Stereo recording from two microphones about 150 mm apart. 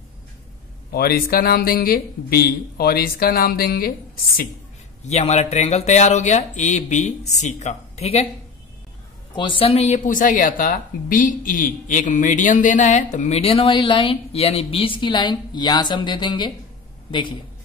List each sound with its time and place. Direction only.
0.9 s speech: 90° left
5.0 s a woman's voice: 50° left (ahead or behind)
9.3 s a woman's voice: 35° left (ahead or behind)